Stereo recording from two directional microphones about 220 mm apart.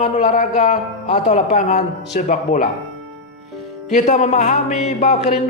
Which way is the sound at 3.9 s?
35° left (ahead or behind).